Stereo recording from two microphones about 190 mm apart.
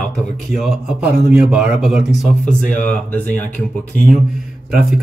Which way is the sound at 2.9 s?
10° left (ahead or behind).